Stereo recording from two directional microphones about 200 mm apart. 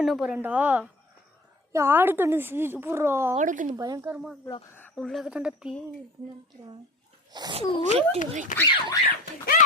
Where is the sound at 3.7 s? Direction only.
20° right (ahead or behind).